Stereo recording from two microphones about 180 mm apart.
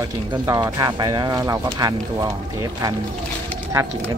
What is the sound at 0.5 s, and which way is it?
Speech, 20° right (ahead or behind).